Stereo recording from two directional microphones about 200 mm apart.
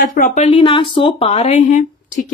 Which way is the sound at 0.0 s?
45° left (ahead or behind).